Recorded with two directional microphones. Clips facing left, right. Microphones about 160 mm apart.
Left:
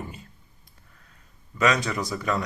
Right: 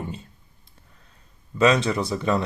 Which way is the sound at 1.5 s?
30° right (ahead or behind).